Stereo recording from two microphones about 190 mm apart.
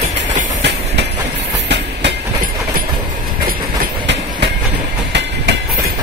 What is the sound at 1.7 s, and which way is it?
Train, 65° right (ahead or behind).